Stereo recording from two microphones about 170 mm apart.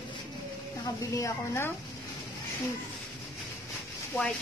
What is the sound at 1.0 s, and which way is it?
Speech, 20° left (ahead or behind).